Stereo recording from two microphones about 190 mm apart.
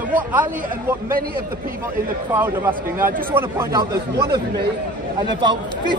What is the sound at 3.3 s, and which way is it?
Speech, 10° right (ahead or behind).